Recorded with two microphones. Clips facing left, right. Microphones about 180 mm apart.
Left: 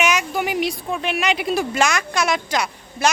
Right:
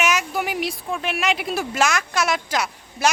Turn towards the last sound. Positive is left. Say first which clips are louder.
# left 1 dB
turn(degrees=-5)  # may be behind; listen again after turning